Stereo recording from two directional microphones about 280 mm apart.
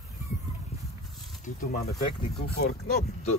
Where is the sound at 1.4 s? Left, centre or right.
Left.